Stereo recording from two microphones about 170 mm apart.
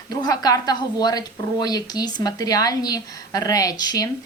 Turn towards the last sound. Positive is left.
turn(degrees=25)  # may be behind; listen again after turning